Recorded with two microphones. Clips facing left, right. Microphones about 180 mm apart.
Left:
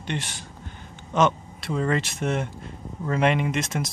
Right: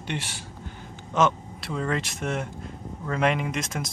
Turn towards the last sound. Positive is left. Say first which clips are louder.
# left 4 dB
turn(degrees=0)  # may be behind; listen again after turning